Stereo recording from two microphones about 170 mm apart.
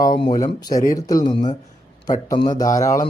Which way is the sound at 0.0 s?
25° left (ahead or behind).